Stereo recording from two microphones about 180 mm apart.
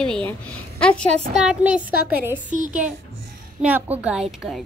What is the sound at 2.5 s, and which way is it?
Speech, 45° right (ahead or behind).